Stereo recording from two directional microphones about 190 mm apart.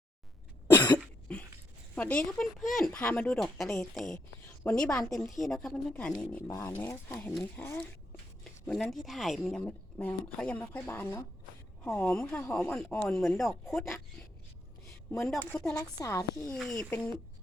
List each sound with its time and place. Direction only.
0.7 s cough: 20° left (ahead or behind)
2.0 s speech: 5° left (ahead or behind)
6.5 s speech: 15° left (ahead or behind); by 14.3 s centre (ahead or behind)
15.3 s speech: 5° left (ahead or behind)
15.7 s speech: 15° left (ahead or behind)
16.5 s speech: 5° left (ahead or behind)